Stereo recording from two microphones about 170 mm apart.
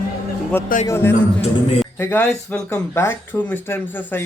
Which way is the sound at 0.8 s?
15° left (ahead or behind).